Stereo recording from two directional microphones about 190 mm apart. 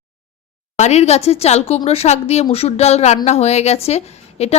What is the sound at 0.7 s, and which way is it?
Speech, 35° left (ahead or behind).